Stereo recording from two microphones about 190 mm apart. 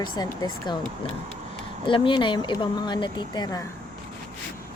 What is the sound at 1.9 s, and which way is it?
A woman's voice, 25° left (ahead or behind).